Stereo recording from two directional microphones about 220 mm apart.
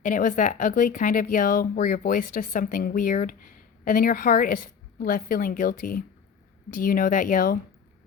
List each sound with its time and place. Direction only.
0.0 s speech: 35° left (ahead or behind)